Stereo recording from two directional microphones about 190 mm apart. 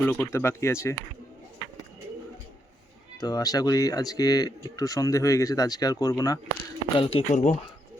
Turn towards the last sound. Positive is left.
turn(degrees=35)  # may be behind; listen again after turning